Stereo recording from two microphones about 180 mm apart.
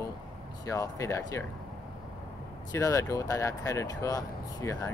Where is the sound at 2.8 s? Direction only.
20° left (ahead or behind).